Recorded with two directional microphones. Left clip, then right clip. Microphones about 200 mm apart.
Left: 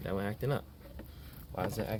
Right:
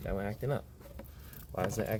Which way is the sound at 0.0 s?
10° left (ahead or behind).